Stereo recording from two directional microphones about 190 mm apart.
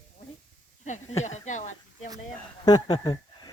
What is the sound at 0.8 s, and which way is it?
Speech, 35° left (ahead or behind).